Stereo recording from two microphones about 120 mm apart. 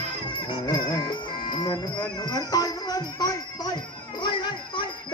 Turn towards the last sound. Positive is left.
turn(degrees=40)  # may be behind; listen again after turning